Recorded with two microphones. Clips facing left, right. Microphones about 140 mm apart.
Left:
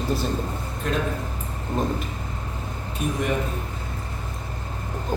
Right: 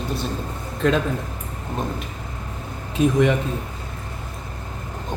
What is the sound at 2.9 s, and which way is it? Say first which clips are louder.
Speech: right 9 dB; 90° right.